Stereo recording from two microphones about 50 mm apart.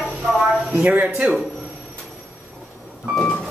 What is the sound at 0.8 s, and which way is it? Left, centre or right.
Speech, right.